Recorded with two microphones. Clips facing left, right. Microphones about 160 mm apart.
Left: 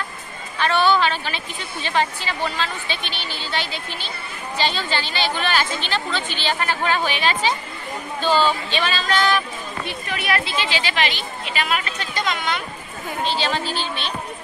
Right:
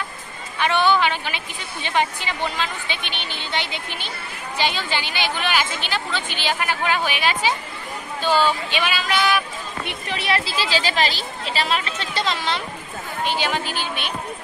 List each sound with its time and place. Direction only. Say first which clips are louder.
0.6 s a woman's voice: left 1 dB; 15° right (ahead or behind)
9.8 s speech: even; 25° right (ahead or behind)
13.2 s a woman's voice: even; 15° right (ahead or behind)